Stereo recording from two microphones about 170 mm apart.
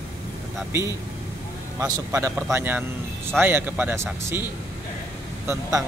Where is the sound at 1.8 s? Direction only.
20° right (ahead or behind).